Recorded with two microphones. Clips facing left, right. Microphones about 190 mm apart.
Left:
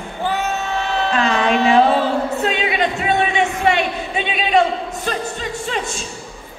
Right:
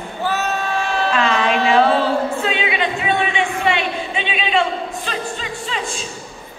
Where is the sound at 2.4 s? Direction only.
45° left (ahead or behind).